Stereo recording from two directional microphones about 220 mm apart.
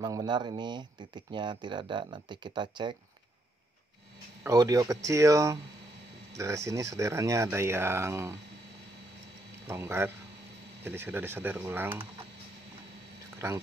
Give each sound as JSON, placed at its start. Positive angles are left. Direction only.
{"t": 0.0, "sound": "speech", "side_deg": -15}
{"t": 4.5, "sound": "speech", "side_deg": -15}
{"t": 9.7, "sound": "speech", "side_deg": -10}